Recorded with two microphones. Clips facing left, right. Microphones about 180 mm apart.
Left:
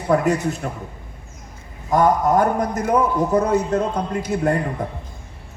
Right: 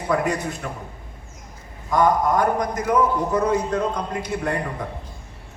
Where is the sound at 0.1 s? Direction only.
45° left (ahead or behind).